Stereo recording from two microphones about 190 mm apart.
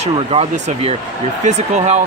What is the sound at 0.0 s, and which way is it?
Speech, 35° right (ahead or behind).